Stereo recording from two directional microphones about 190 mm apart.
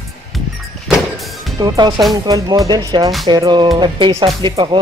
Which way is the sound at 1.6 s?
20° right (ahead or behind).